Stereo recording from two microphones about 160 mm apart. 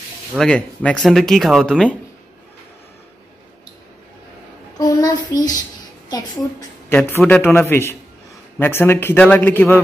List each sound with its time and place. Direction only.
0.4 s speech: 5° left (ahead or behind)
4.7 s child singing: 25° left (ahead or behind)
6.0 s a woman's voice: 25° left (ahead or behind)